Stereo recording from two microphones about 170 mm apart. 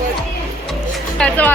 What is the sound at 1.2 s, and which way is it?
Speech, 10° left (ahead or behind).